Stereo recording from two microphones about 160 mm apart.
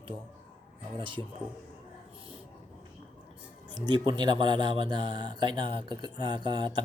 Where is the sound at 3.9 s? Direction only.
25° right (ahead or behind).